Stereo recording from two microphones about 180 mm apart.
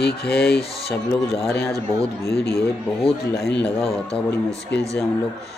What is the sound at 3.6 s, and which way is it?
Speech, 5° left (ahead or behind).